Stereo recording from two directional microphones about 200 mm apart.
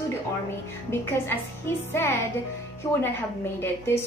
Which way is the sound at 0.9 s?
10° left (ahead or behind).